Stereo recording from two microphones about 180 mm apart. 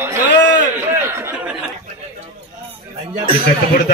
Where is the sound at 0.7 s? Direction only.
15° right (ahead or behind).